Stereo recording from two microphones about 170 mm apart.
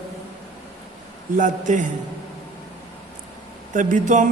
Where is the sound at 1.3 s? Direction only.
50° right (ahead or behind).